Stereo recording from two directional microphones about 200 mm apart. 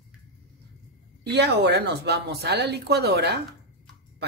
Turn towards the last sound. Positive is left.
turn(degrees=-55)  # may be behind; listen again after turning